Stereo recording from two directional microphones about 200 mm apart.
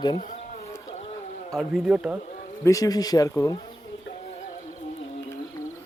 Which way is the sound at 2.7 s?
15° left (ahead or behind).